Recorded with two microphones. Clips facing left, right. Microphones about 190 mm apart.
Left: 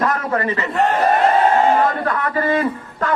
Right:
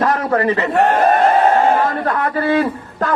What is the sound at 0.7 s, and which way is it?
Speech, 60° right (ahead or behind).